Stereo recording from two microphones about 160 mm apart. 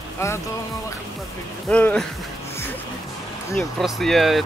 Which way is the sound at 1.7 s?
10° left (ahead or behind).